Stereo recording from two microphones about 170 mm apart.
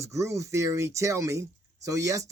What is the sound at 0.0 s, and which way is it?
Speech, 20° right (ahead or behind).